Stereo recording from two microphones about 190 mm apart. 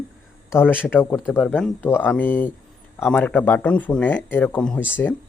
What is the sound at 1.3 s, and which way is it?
Speech, 5° left (ahead or behind).